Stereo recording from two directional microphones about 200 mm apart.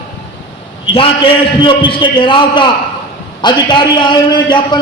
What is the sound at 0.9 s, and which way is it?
A man's voice, 25° left (ahead or behind).